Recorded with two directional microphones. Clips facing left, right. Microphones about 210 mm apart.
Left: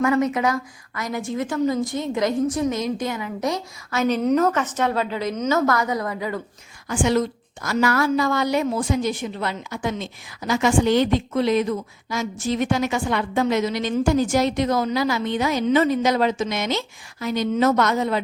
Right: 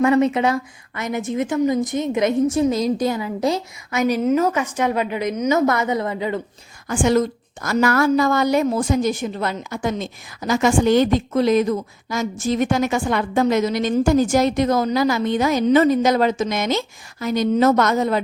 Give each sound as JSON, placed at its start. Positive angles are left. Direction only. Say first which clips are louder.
{"t": 0.0, "sound": "a woman's voice", "louder": "right 4 dB", "side_deg": -25}
{"t": 3.9, "sound": "a woman's voice", "louder": "right 1 dB", "side_deg": -10}
{"t": 6.8, "sound": "a woman's voice", "louder": "right 3 dB", "side_deg": -45}